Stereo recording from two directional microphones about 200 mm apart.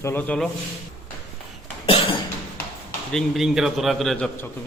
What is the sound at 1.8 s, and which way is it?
Cough, 25° left (ahead or behind).